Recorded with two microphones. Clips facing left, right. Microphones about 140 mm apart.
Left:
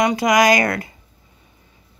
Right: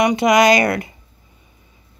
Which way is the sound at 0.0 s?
25° right (ahead or behind).